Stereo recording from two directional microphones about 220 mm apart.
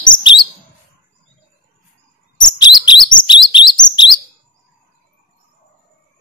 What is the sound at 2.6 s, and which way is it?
Chirp, 20° left (ahead or behind).